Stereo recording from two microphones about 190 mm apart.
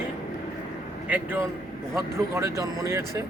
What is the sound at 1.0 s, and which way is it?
A man's voice, 10° right (ahead or behind).